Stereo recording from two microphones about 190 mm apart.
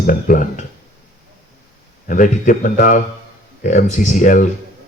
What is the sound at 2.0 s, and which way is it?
A man's voice, 45° left (ahead or behind).